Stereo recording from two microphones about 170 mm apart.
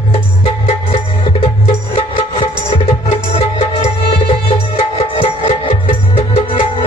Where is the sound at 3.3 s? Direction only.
35° left (ahead or behind).